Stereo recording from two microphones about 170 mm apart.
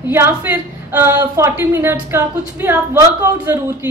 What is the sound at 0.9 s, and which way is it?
A woman's voice, 15° right (ahead or behind).